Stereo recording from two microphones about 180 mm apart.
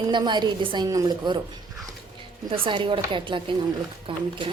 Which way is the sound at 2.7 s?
30° right (ahead or behind).